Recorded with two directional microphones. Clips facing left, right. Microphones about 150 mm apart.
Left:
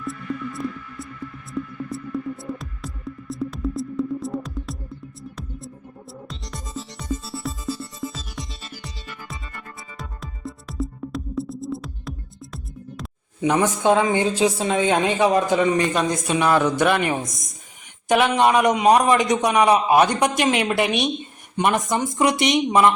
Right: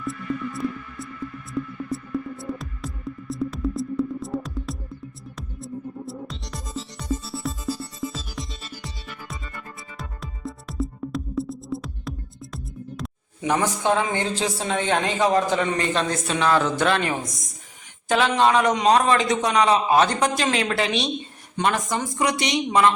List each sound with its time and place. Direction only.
0.0 s music: centre (ahead or behind)
13.4 s a woman's voice: 15° left (ahead or behind)